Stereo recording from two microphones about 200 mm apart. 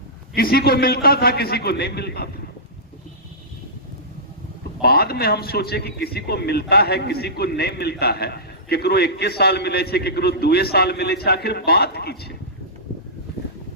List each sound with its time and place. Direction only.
0.3 s a man's voice: 50° left (ahead or behind)
4.8 s a man's voice: 50° left (ahead or behind)